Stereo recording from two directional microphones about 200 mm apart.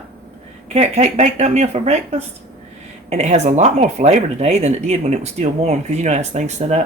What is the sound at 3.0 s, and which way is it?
Speech, 35° right (ahead or behind).